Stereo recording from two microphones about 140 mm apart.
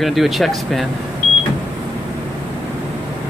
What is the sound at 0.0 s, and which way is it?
Speech, centre (ahead or behind).